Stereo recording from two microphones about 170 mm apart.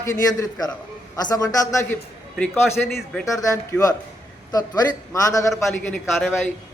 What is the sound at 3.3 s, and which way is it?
A man's voice, 20° left (ahead or behind).